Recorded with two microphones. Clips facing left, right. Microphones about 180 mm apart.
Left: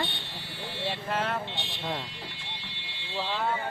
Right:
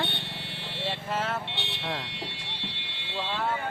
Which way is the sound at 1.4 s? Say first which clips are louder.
Even; 70° right (ahead or behind).